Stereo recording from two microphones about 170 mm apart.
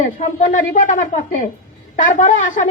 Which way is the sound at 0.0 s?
45° left (ahead or behind).